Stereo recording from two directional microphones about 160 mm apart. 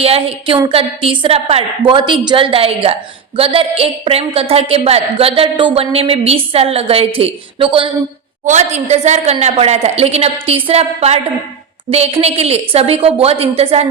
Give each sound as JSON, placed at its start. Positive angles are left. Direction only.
{"t": 0.0, "sound": "a woman's voice", "side_deg": -35}
{"t": 8.4, "sound": "a woman's voice", "side_deg": -45}